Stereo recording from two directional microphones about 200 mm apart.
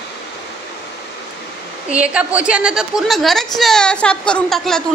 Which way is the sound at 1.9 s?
5° right (ahead or behind).